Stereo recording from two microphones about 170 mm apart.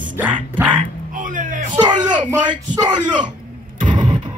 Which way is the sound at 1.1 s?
50° right (ahead or behind).